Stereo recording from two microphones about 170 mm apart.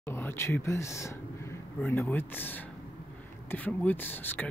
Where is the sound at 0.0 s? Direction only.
15° left (ahead or behind).